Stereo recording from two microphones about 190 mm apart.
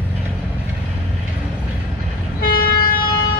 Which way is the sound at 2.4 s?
50° left (ahead or behind).